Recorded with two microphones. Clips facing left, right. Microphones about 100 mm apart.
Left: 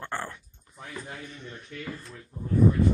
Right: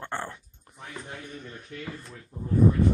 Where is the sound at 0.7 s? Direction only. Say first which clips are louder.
Left 2 dB; 55° right (ahead or behind).